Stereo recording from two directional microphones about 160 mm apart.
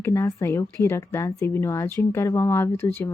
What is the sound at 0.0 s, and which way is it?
Speech, 20° left (ahead or behind).